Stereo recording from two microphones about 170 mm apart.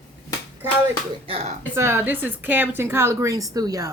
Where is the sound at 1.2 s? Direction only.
35° right (ahead or behind).